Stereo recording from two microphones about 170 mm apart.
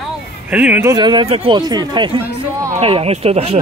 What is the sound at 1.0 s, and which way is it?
Speech, 25° right (ahead or behind).